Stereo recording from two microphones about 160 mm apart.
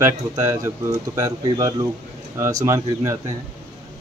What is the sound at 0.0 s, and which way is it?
Speech, 20° right (ahead or behind).